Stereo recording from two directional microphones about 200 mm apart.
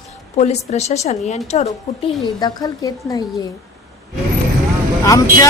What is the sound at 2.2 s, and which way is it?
Speech, 20° left (ahead or behind).